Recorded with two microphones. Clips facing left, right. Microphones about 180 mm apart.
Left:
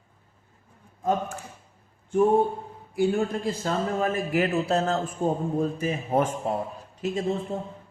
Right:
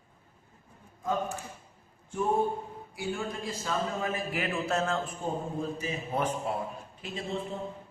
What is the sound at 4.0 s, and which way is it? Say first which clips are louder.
A man's voice: left 8 dB; 45° left (ahead or behind).